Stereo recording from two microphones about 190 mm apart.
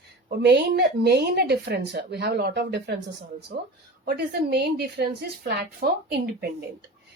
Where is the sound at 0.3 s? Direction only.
60° right (ahead or behind).